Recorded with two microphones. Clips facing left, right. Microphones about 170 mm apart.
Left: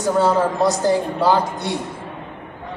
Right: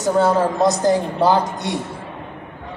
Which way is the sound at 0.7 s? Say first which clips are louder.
Right 1 dB; 15° right (ahead or behind).